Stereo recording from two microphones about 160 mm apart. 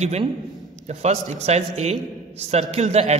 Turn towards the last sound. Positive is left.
turn(degrees=-40)  # may be behind; listen again after turning